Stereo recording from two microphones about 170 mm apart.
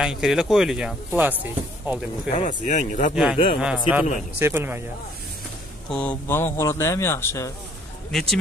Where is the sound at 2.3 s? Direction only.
40° left (ahead or behind).